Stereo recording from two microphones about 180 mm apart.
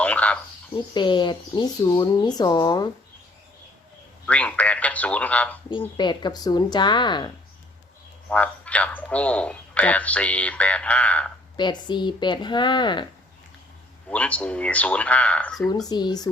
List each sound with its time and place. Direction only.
0.0 s cricket: 5° left (ahead or behind)
0.9 s speech: 25° left (ahead or behind)
4.3 s speech: 5° left (ahead or behind)
6.0 s speech: 25° left (ahead or behind)
8.3 s speech: 5° left (ahead or behind)
11.5 s speech: 25° left (ahead or behind)
14.1 s speech: 10° left (ahead or behind)
15.9 s speech: 25° left (ahead or behind)